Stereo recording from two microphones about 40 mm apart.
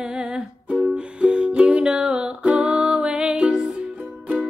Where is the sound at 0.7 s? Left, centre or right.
Right.